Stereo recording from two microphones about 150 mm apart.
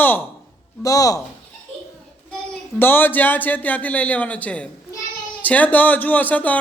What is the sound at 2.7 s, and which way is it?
A man's voice, 15° left (ahead or behind).